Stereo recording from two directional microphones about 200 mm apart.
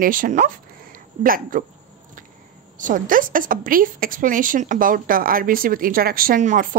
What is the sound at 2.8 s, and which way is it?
A woman's voice, 40° right (ahead or behind).